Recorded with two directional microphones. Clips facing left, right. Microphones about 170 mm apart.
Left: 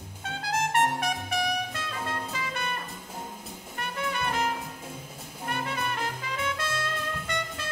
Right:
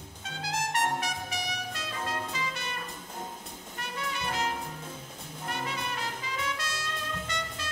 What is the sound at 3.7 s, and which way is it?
Music, 55° left (ahead or behind).